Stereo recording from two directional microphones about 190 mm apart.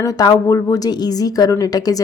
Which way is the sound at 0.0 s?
20° left (ahead or behind).